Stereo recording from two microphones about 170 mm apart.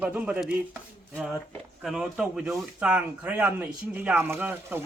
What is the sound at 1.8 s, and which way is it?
Speech, 5° right (ahead or behind).